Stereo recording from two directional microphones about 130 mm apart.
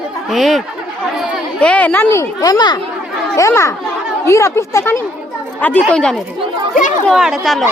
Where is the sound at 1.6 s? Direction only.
10° left (ahead or behind).